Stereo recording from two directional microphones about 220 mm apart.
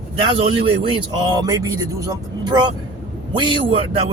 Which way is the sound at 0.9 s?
20° right (ahead or behind).